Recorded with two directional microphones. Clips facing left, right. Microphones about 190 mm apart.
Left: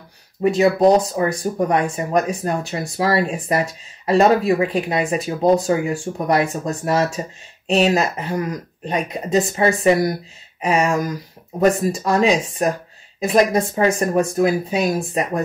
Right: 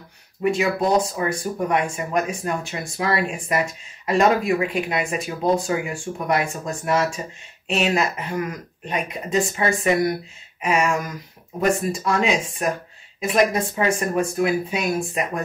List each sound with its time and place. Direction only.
0.4 s speech: 35° left (ahead or behind)